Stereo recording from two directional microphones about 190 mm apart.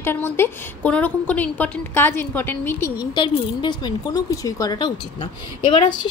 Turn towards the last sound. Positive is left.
turn(degrees=40)  # may be behind; listen again after turning